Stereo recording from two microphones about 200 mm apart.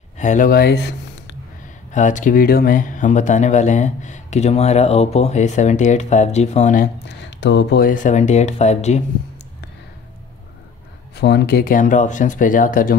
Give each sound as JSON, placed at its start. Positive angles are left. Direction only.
{"t": 0.2, "sound": "speech", "side_deg": 40}
{"t": 1.9, "sound": "speech", "side_deg": 40}
{"t": 7.1, "sound": "speech", "side_deg": 60}
{"t": 11.1, "sound": "speech", "side_deg": 55}